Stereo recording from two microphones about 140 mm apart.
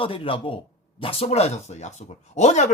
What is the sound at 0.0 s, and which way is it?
A man's voice, 40° left (ahead or behind).